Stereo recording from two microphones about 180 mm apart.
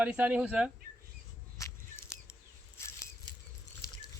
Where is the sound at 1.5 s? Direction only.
15° left (ahead or behind).